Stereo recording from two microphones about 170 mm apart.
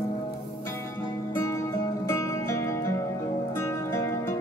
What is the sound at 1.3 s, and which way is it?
Music, 15° left (ahead or behind).